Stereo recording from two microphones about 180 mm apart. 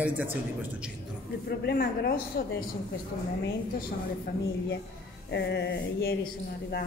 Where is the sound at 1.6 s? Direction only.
60° left (ahead or behind).